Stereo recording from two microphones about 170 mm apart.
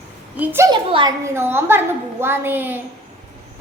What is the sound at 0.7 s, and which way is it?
Speech, 30° right (ahead or behind).